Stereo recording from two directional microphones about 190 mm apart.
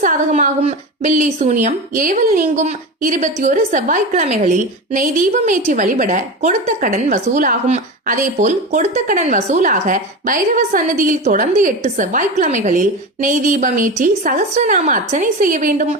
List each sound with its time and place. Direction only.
0.0 s a woman's voice: 40° right (ahead or behind)